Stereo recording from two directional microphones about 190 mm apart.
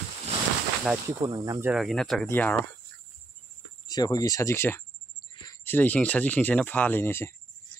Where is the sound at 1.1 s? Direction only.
20° right (ahead or behind).